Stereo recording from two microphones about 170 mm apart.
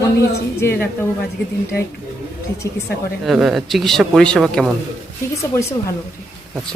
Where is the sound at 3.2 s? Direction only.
Centre (ahead or behind).